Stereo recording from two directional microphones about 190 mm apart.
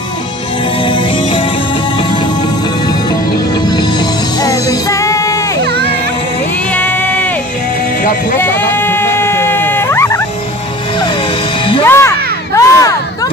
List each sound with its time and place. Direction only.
0.8 s music: 25° left (ahead or behind)
3.6 s music: 20° left (ahead or behind)
5.6 s music: 60° right (ahead or behind)
6.7 s a sound: 10° left (ahead or behind)
8.4 s a sound: 10° left (ahead or behind)
11.8 s crowd: 15° left (ahead or behind)